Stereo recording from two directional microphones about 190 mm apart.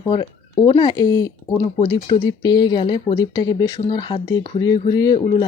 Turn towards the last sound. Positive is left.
turn(degrees=25)  # may be behind; listen again after turning